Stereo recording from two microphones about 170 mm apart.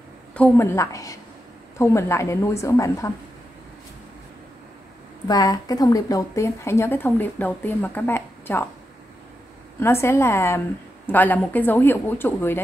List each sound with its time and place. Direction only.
0.3 s speech: 10° left (ahead or behind)
5.3 s speech: 20° left (ahead or behind)
9.8 s speech: 15° left (ahead or behind)